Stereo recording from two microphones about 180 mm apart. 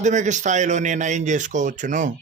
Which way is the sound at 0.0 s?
40° right (ahead or behind).